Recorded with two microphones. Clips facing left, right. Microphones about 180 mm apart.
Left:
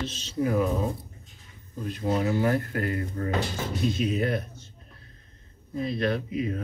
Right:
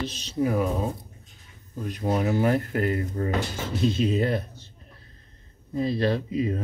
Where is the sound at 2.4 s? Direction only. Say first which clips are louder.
Right 2 dB; 20° right (ahead or behind).